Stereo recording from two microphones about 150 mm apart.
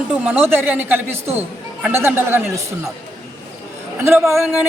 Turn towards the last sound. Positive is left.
turn(degrees=-15)  # may be behind; listen again after turning